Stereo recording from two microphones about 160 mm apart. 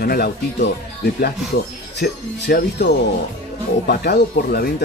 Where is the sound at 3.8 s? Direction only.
75° left (ahead or behind).